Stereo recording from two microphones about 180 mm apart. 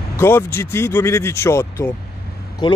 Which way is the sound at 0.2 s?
15° left (ahead or behind).